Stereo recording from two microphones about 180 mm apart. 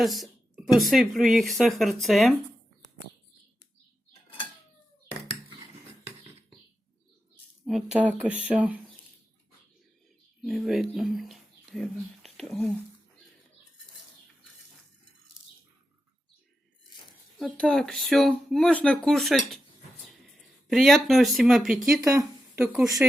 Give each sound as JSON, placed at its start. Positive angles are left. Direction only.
{"t": 0.0, "sound": "a woman's voice", "side_deg": 0}
{"t": 7.6, "sound": "speech", "side_deg": -5}
{"t": 10.4, "sound": "a woman's voice", "side_deg": 0}
{"t": 17.3, "sound": "a woman's voice", "side_deg": 0}
{"t": 22.0, "sound": "a sound", "side_deg": -15}
{"t": 22.6, "sound": "a woman's voice", "side_deg": -5}